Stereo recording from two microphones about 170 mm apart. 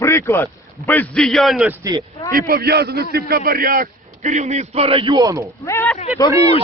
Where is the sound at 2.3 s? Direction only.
60° right (ahead or behind); by 5.4 s 20° right (ahead or behind).